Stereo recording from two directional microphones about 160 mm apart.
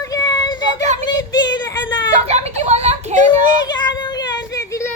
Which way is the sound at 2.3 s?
40° right (ahead or behind).